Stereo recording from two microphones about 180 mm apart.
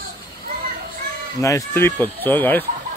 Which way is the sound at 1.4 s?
15° left (ahead or behind).